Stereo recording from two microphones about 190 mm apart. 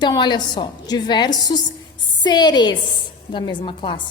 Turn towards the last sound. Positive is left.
turn(degrees=25)  # may be behind; listen again after turning